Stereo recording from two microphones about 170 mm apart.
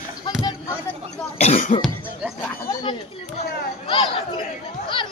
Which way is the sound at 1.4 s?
45° left (ahead or behind).